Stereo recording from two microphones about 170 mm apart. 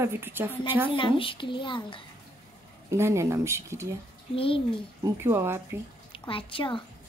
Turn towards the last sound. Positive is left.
turn(degrees=30)  # may be behind; listen again after turning